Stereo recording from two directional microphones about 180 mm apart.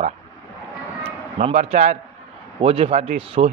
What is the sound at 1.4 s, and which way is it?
A man's voice, 40° right (ahead or behind).